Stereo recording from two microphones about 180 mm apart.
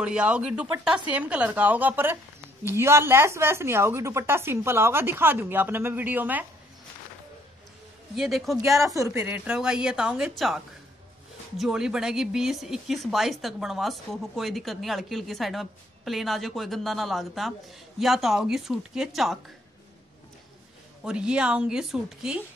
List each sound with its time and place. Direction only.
0.0 s speech: 5° right (ahead or behind)
8.2 s speech: centre (ahead or behind)
8.6 s speech: 15° right (ahead or behind)
21.0 s speech: 5° right (ahead or behind)